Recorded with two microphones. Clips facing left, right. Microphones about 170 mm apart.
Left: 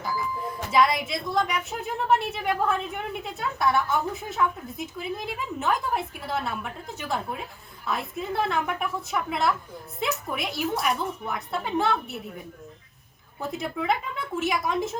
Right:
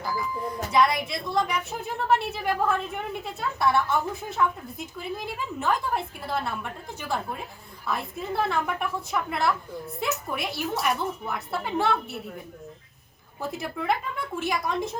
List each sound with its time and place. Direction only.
0.4 s a woman's voice: centre (ahead or behind)
7.9 s a woman's voice: centre (ahead or behind)
13.4 s a woman's voice: centre (ahead or behind)